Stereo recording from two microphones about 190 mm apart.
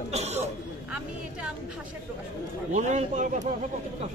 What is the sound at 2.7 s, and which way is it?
Speech, 40° right (ahead or behind).